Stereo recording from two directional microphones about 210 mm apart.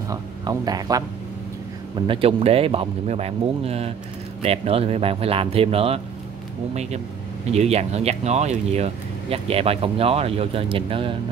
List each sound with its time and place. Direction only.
0.1 s speech: 20° right (ahead or behind)
2.0 s speech: 25° right (ahead or behind)